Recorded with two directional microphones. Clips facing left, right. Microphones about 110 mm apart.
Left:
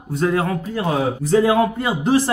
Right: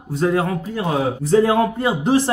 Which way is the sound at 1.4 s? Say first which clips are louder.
Left 1 dB; 30° right (ahead or behind).